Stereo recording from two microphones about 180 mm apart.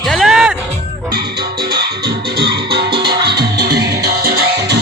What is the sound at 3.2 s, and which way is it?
Music, 65° right (ahead or behind).